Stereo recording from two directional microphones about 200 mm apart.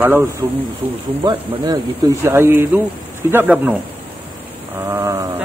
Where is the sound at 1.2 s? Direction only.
25° right (ahead or behind).